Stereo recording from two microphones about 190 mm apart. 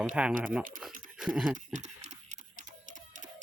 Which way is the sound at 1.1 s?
5° right (ahead or behind).